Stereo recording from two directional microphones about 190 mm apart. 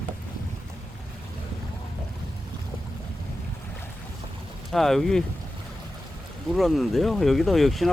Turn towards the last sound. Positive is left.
turn(degrees=0)  # may be behind; listen again after turning